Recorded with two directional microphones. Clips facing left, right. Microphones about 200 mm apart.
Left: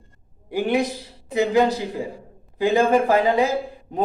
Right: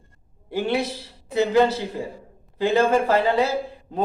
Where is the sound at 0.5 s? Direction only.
15° left (ahead or behind).